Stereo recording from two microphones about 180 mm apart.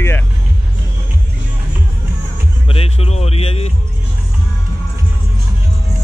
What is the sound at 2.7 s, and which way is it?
Speech, 35° left (ahead or behind).